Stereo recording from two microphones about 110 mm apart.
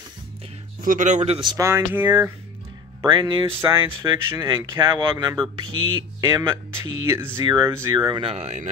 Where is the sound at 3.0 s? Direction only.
35° right (ahead or behind).